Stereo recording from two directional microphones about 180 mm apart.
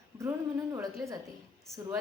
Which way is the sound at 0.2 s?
20° right (ahead or behind).